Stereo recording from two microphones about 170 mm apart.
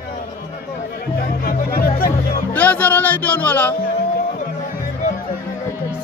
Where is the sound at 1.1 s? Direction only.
60° left (ahead or behind).